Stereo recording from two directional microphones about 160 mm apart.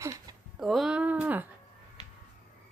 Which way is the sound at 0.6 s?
Centre (ahead or behind).